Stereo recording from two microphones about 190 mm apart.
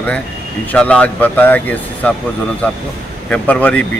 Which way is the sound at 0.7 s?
5° left (ahead or behind).